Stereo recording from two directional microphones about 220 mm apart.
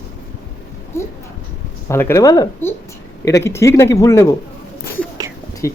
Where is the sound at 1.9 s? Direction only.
10° left (ahead or behind).